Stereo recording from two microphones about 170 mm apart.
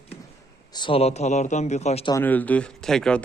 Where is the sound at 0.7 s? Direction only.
30° left (ahead or behind).